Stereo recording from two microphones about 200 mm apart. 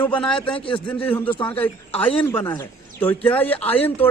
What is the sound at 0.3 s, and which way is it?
Speech, 25° left (ahead or behind).